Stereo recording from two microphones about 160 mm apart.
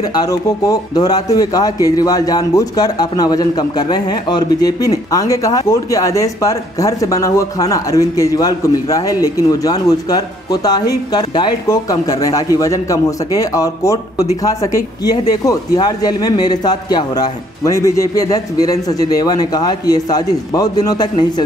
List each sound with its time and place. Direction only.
0.1 s a man's voice: 25° left (ahead or behind)